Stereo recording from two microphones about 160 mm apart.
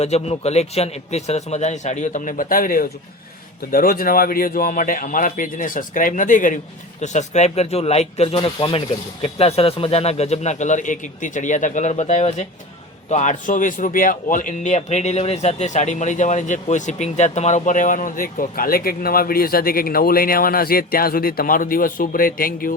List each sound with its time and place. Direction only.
0.0 s speech: 40° left (ahead or behind); by 22.7 s 60° left (ahead or behind)